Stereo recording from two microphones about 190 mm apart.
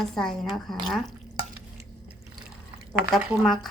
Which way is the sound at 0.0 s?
Centre (ahead or behind).